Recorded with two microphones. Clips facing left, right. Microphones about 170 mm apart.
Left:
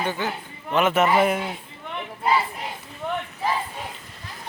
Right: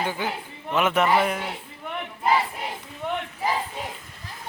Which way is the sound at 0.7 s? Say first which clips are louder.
Left 2 dB; centre (ahead or behind).